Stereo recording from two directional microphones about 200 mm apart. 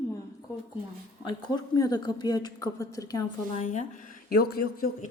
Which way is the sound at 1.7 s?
20° left (ahead or behind).